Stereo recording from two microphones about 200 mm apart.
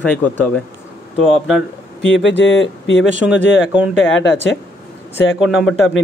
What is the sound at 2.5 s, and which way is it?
Speech, 70° left (ahead or behind).